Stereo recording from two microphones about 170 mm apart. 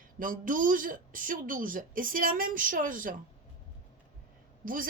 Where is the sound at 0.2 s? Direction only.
50° right (ahead or behind).